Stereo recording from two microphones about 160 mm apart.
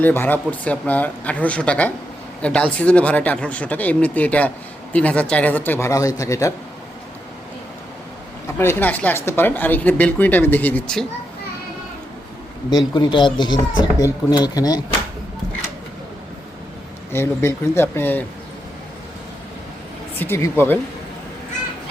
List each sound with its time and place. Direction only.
0.0 s speech: 15° left (ahead or behind)
8.4 s speech: 15° left (ahead or behind)
12.9 s speech: 30° left (ahead or behind)
17.1 s speech: 15° left (ahead or behind)
20.1 s speech: 15° left (ahead or behind)